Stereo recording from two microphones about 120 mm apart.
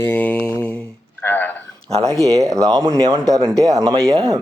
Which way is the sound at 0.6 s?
10° left (ahead or behind).